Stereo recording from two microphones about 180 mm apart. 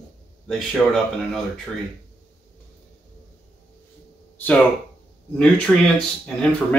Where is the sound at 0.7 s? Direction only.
5° left (ahead or behind).